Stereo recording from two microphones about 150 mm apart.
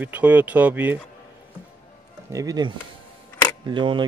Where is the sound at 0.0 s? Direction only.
10° right (ahead or behind).